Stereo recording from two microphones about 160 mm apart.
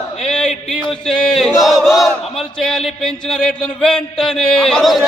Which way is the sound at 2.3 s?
5° left (ahead or behind).